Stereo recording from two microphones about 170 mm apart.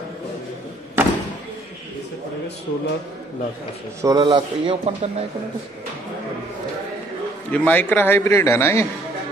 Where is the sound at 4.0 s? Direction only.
20° right (ahead or behind).